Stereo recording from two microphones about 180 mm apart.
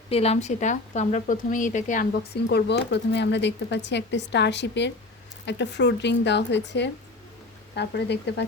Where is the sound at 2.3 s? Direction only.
65° left (ahead or behind).